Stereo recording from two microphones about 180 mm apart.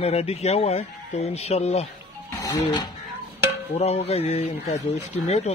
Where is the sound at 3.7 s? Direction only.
35° left (ahead or behind).